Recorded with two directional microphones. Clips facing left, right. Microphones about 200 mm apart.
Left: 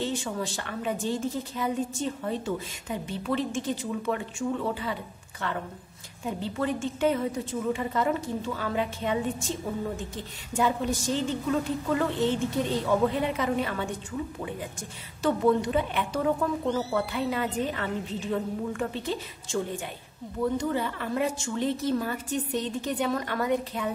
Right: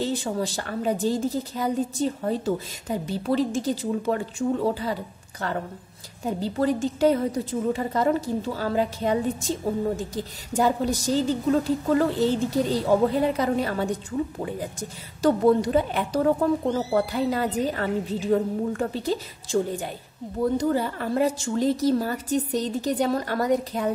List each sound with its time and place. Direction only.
0.0 s a woman's voice: 35° right (ahead or behind)
6.2 s a woman's voice: 35° right (ahead or behind)